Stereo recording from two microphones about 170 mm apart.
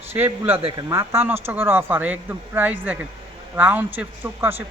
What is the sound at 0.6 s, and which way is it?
A man's voice, 25° right (ahead or behind).